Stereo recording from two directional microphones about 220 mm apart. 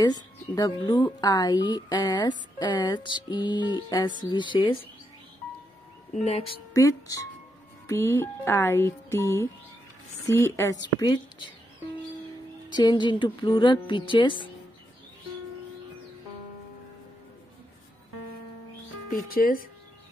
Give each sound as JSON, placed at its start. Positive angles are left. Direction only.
{"t": 0.0, "sound": "speech", "side_deg": 20}
{"t": 6.1, "sound": "speech", "side_deg": 30}
{"t": 6.7, "sound": "speech", "side_deg": 15}
{"t": 12.7, "sound": "speech", "side_deg": 20}
{"t": 19.3, "sound": "speech", "side_deg": 40}